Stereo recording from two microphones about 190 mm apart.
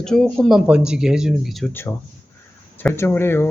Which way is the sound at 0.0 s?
5° left (ahead or behind).